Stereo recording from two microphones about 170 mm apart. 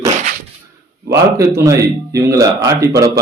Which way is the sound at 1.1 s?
15° right (ahead or behind).